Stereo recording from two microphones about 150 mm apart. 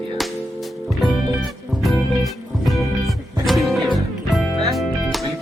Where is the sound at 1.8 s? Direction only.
Centre (ahead or behind).